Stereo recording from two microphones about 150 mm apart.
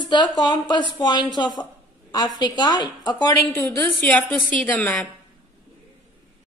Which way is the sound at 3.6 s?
15° left (ahead or behind).